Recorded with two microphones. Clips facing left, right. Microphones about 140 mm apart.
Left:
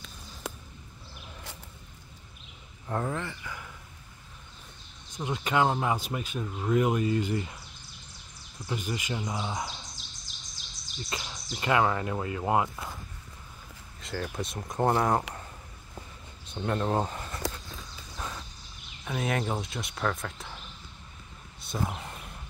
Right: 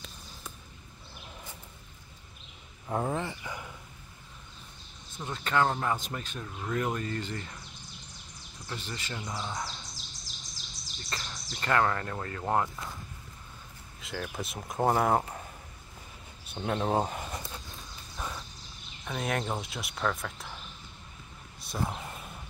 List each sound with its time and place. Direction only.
0.4 s a sound: 90° left
3.1 s speech: 20° right (ahead or behind)
5.1 s speech: 15° left (ahead or behind)
8.6 s speech: 10° left (ahead or behind)
9.9 s bird: centre (ahead or behind)
10.9 s speech: centre (ahead or behind)
14.0 s speech: centre (ahead or behind)
16.5 s speech: 5° right (ahead or behind)
19.0 s speech: centre (ahead or behind)
21.5 s a sound: centre (ahead or behind)